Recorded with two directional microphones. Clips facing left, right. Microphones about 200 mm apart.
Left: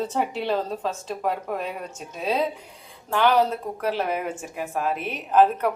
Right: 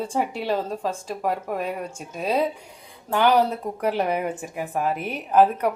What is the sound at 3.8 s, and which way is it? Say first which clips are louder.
Speech: right 3 dB; 15° right (ahead or behind).